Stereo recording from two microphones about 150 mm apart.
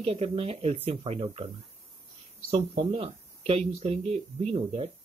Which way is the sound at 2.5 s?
40° right (ahead or behind).